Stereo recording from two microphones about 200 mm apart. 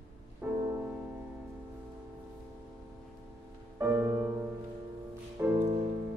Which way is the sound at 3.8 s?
15° right (ahead or behind).